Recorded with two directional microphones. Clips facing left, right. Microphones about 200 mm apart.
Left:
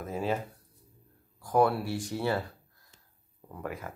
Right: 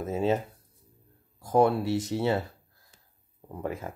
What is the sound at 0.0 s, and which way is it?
Speech, 25° right (ahead or behind).